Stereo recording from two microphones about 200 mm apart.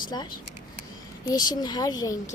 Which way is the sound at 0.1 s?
20° left (ahead or behind).